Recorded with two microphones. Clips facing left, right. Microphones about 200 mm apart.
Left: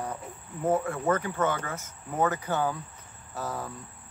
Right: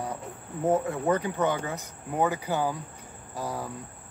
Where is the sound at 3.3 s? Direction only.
10° right (ahead or behind).